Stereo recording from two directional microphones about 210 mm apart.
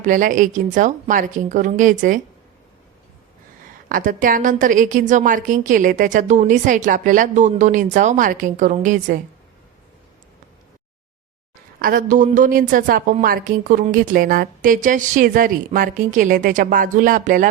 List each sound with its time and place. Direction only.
0.0 s a woman's voice: 40° right (ahead or behind)
3.8 s a woman's voice: 40° right (ahead or behind)
11.8 s a woman's voice: 40° right (ahead or behind)